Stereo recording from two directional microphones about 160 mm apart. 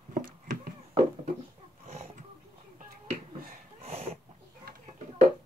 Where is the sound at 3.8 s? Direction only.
40° right (ahead or behind).